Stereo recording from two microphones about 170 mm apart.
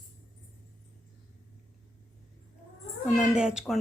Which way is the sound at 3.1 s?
5° right (ahead or behind).